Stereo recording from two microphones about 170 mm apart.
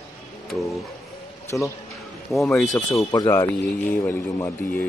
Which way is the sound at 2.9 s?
20° left (ahead or behind).